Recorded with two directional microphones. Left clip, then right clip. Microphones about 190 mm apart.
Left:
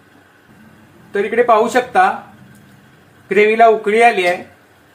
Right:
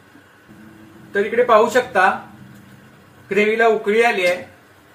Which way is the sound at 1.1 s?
55° left (ahead or behind).